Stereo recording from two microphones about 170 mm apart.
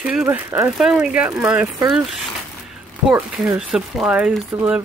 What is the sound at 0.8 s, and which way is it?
Speech, 5° right (ahead or behind).